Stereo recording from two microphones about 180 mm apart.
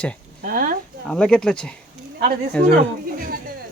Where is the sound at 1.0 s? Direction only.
5° left (ahead or behind).